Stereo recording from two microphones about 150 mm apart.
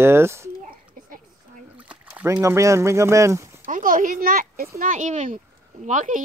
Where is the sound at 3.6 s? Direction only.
60° right (ahead or behind).